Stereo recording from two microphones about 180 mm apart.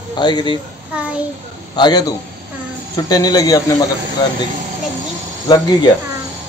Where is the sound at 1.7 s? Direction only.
25° left (ahead or behind).